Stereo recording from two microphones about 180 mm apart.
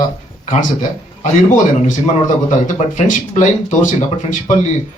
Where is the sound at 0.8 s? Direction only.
45° left (ahead or behind).